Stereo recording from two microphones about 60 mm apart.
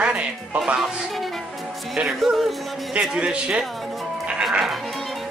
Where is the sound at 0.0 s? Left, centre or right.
Right.